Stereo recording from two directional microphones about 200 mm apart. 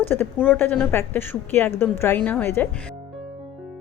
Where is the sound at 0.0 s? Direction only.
10° left (ahead or behind).